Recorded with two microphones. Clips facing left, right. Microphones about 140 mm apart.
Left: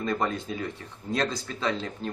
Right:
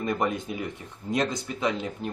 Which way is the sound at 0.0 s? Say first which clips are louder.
Right 1 dB; 15° right (ahead or behind).